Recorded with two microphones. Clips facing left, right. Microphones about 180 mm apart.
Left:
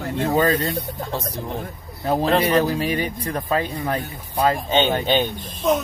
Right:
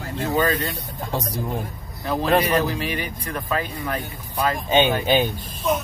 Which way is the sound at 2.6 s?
40° left (ahead or behind).